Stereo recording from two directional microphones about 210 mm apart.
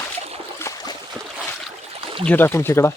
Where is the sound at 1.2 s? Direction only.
5° left (ahead or behind).